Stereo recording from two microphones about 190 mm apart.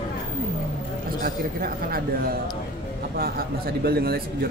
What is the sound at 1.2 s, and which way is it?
Speech, 50° right (ahead or behind).